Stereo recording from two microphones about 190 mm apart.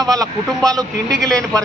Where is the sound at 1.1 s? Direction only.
5° left (ahead or behind).